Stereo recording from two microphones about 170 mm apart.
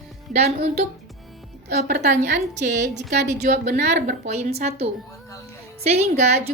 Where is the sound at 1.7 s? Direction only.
50° right (ahead or behind).